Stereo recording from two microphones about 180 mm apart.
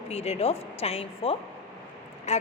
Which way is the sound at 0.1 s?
35° left (ahead or behind).